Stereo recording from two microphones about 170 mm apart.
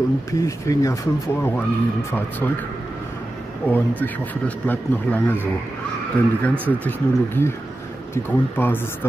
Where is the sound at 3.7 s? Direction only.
10° left (ahead or behind).